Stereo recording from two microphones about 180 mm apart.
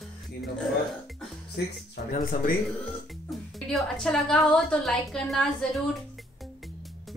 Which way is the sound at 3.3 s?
Centre (ahead or behind).